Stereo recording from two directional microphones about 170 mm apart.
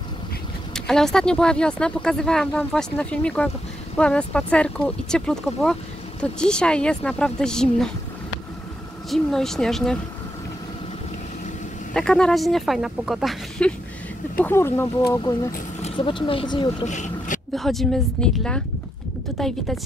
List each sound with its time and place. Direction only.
0.7 s speech: 5° left (ahead or behind)
9.1 s speech: centre (ahead or behind)
11.9 s speech: 5° left (ahead or behind)
14.4 s speech: 15° left (ahead or behind)
16.8 s speech: 45° left (ahead or behind)
17.6 s speech: centre (ahead or behind)